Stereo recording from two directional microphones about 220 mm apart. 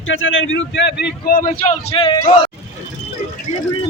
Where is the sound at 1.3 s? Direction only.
40° left (ahead or behind); by 2.5 s 20° left (ahead or behind).